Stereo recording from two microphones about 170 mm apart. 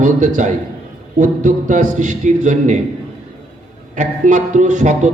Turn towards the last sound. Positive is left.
turn(degrees=-45)  # may be behind; listen again after turning